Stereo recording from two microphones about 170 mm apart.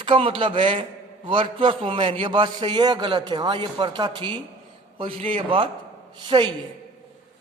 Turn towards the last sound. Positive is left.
turn(degrees=-25)  # may be behind; listen again after turning